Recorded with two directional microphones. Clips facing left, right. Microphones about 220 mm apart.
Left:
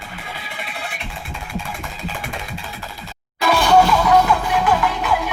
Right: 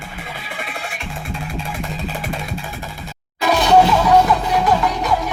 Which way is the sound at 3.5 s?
20° right (ahead or behind).